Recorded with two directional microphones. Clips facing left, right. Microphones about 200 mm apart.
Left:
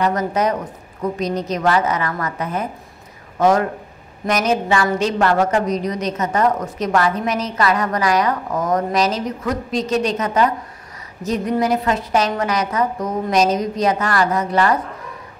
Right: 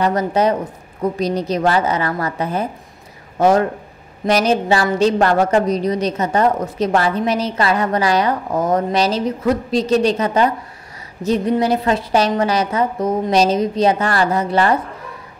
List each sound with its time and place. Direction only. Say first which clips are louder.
0.0 s a woman's voice: right 2 dB; 30° right (ahead or behind)